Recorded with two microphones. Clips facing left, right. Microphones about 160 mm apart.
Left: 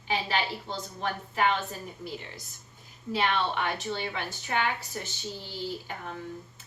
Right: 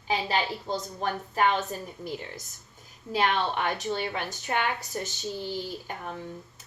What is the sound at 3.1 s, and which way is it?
A woman's voice, 40° right (ahead or behind).